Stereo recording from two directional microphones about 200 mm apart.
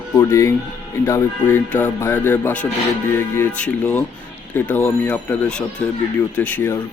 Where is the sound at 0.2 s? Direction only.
15° left (ahead or behind).